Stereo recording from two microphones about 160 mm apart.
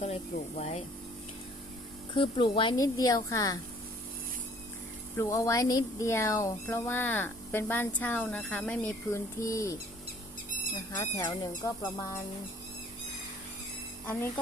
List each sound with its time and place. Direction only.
0.0 s speech: 45° left (ahead or behind)
2.1 s speech: 30° left (ahead or behind)
2.7 s speech: 20° left (ahead or behind)
5.1 s speech: 15° left (ahead or behind)
10.9 s speech: 20° left (ahead or behind)